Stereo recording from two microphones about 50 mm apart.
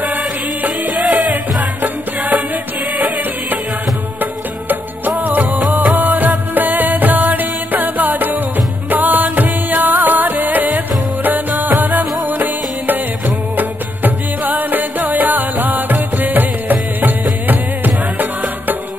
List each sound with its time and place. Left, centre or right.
0.6 s music: right
4.2 s music: right